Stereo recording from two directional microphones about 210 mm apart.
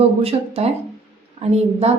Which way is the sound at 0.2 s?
30° right (ahead or behind).